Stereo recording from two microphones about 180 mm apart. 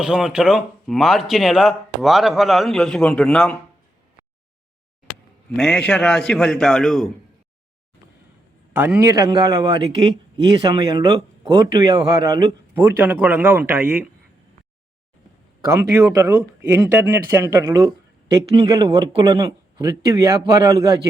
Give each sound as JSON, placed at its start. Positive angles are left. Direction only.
{"t": 0.0, "sound": "speech", "side_deg": -5}
{"t": 5.5, "sound": "speech", "side_deg": 5}
{"t": 8.7, "sound": "a man's voice", "side_deg": -10}
{"t": 12.7, "sound": "speech", "side_deg": -10}
{"t": 15.6, "sound": "a man's voice", "side_deg": -15}